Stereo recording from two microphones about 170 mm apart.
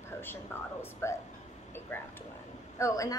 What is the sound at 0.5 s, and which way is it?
A woman's voice, 15° left (ahead or behind).